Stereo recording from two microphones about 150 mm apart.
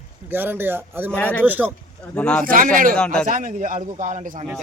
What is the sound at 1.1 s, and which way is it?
Speech, 10° left (ahead or behind).